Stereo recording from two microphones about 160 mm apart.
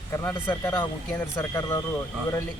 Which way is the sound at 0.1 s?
15° left (ahead or behind).